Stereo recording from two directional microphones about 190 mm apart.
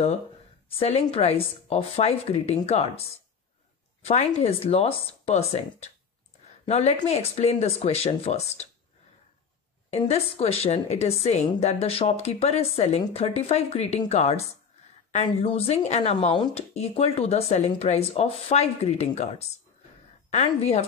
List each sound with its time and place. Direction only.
0.7 s a woman's voice: 30° left (ahead or behind)
4.0 s a woman's voice: 35° left (ahead or behind)
9.8 s a woman's voice: 35° left (ahead or behind)